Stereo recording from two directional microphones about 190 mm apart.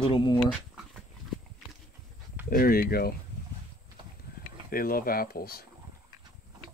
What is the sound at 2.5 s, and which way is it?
Speech, 50° left (ahead or behind).